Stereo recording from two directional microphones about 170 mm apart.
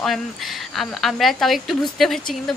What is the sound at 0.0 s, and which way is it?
Speech, centre (ahead or behind).